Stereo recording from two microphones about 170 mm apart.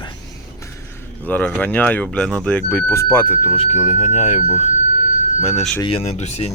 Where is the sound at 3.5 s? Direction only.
35° left (ahead or behind).